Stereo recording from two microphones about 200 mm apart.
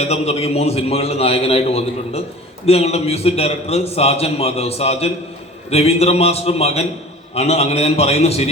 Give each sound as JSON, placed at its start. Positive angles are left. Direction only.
{"t": 0.0, "sound": "a man's voice", "side_deg": 30}